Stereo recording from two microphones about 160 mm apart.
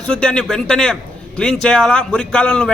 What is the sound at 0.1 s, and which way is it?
Speech, 5° left (ahead or behind).